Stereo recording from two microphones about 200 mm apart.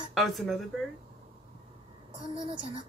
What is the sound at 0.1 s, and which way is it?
Speech, centre (ahead or behind).